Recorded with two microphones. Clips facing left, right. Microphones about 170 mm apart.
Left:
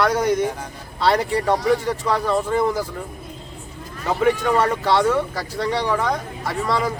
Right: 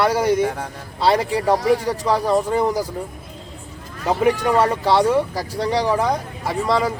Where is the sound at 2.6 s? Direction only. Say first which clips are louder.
Right 1 dB; 40° right (ahead or behind).